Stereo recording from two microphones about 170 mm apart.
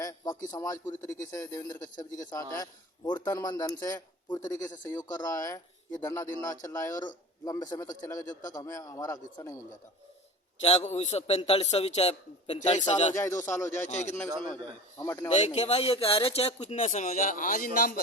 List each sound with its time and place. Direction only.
0.0 s a sound: 20° left (ahead or behind)
0.5 s a man's voice: 20° left (ahead or behind)
10.6 s speech: 35° left (ahead or behind)
13.1 s speech: 15° left (ahead or behind)
13.8 s speech: 45° left (ahead or behind)
14.5 s speech: 15° left (ahead or behind)
15.3 s a man's voice: 40° left (ahead or behind)